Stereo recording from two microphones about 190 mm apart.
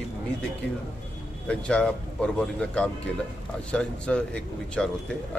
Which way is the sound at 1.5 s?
5° left (ahead or behind).